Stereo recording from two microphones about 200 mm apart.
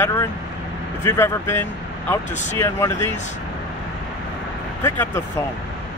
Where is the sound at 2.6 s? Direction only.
15° left (ahead or behind).